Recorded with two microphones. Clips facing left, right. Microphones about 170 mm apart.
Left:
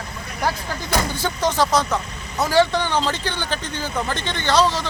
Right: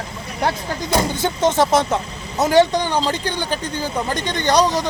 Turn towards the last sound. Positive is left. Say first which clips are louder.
# right 2 dB
turn(degrees=-15)  # may be behind; listen again after turning